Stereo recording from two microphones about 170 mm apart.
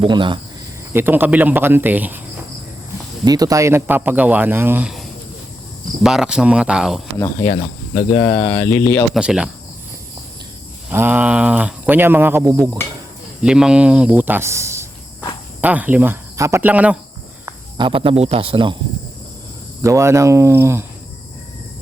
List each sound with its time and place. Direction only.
0.0 s speech: 30° right (ahead or behind)
0.9 s speech: 10° right (ahead or behind)
3.2 s speech: 20° right (ahead or behind); by 7.0 s 5° right (ahead or behind)
8.1 s speech: 20° left (ahead or behind)
9.1 s speech: 5° right (ahead or behind)
10.9 s speech: 10° right (ahead or behind)
13.4 s speech: 5° right (ahead or behind)
17.4 s speech: 25° right (ahead or behind)
19.8 s speech: 15° right (ahead or behind)